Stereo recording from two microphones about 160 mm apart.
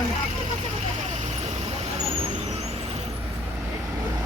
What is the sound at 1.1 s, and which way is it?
Vehicle, 45° right (ahead or behind).